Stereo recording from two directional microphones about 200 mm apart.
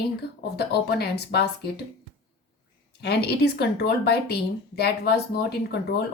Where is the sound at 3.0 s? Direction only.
55° left (ahead or behind).